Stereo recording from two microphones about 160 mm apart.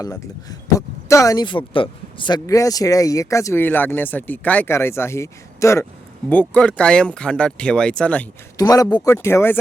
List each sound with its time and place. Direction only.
0.8 s speech: 20° left (ahead or behind)
6.3 s speech: 5° left (ahead or behind)
8.5 s a man's voice: 20° left (ahead or behind)